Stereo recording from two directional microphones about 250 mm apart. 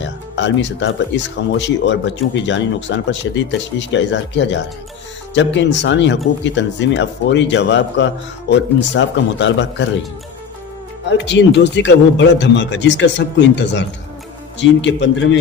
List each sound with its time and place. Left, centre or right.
0.0 s speech: left
11.1 s speech: left